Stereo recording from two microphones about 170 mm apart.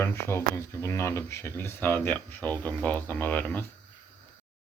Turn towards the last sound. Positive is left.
turn(degrees=10)  # may be behind; listen again after turning